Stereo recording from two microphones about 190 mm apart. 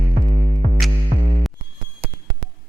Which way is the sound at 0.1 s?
40° right (ahead or behind).